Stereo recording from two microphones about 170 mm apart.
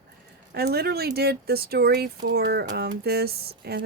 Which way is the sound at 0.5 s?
70° right (ahead or behind).